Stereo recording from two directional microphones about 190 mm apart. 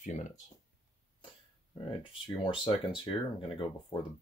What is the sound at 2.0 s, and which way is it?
Speech, 25° left (ahead or behind).